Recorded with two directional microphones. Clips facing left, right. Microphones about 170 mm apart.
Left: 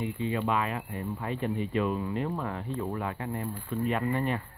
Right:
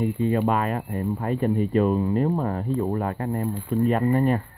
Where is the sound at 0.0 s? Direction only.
45° right (ahead or behind).